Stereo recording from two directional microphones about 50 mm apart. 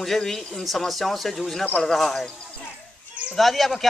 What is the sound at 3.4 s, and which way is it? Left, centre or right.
Speech, centre.